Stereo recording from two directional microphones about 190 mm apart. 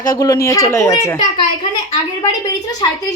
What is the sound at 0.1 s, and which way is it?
A woman's voice, 20° left (ahead or behind).